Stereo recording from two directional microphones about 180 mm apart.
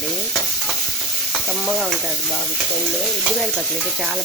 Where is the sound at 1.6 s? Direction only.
Centre (ahead or behind).